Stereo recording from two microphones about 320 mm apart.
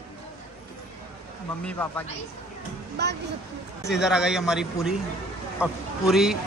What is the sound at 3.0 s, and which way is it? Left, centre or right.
Speech, right.